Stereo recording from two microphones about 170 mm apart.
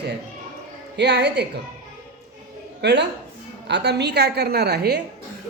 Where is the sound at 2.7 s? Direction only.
85° right.